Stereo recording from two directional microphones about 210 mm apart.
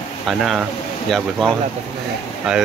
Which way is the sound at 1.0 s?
Centre (ahead or behind).